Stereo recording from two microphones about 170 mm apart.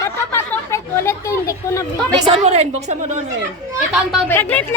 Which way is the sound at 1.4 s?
20° left (ahead or behind).